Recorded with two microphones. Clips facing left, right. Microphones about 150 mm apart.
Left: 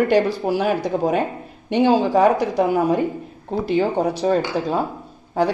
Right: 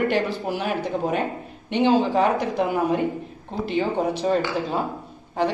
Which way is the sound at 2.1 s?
40° left (ahead or behind).